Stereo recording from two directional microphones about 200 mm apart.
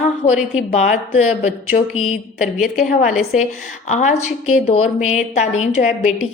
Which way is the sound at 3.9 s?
35° left (ahead or behind).